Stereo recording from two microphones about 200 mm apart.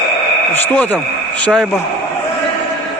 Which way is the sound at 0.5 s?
10° left (ahead or behind).